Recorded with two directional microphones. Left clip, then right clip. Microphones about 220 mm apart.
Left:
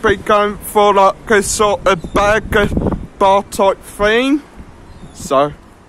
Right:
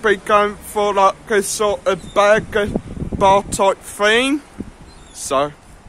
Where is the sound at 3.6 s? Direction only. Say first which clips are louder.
Left 2 dB; centre (ahead or behind).